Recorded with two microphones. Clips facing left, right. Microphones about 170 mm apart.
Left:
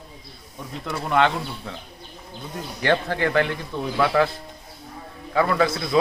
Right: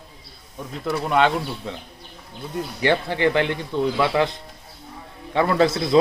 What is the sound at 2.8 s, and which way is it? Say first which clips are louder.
A man's voice: right 1 dB; 15° right (ahead or behind).